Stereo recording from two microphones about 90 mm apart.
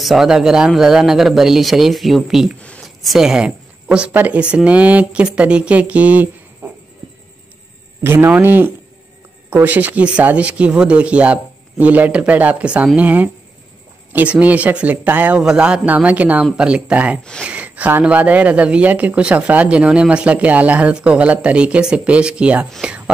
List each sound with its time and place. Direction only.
0.0 s speech: centre (ahead or behind); by 6.7 s 15° right (ahead or behind)
8.0 s speech: 25° right (ahead or behind)
22.8 s a sound: 10° right (ahead or behind)